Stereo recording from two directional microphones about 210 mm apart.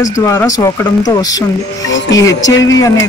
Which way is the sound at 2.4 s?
65° left (ahead or behind).